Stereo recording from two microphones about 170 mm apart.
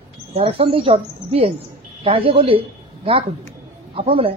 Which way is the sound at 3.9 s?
35° right (ahead or behind).